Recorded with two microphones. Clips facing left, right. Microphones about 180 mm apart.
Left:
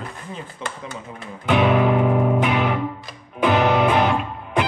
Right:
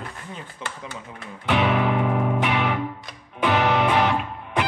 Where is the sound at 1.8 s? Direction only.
35° left (ahead or behind).